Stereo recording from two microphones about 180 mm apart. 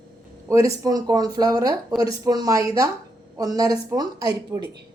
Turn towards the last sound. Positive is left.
turn(degrees=-20)  # may be behind; listen again after turning